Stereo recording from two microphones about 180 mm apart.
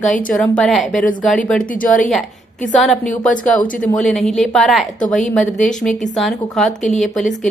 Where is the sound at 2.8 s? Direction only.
Centre (ahead or behind).